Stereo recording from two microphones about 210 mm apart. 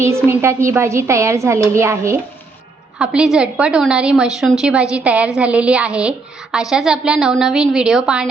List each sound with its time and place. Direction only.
0.3 s a woman's voice: 10° right (ahead or behind)